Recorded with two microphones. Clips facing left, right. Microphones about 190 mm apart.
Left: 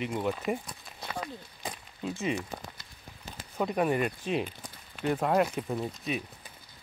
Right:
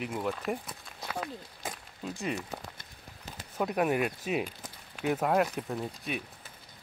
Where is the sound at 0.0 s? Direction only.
Centre (ahead or behind).